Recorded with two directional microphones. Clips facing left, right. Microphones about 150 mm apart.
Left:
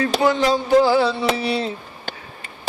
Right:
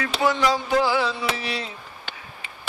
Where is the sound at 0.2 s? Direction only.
25° left (ahead or behind).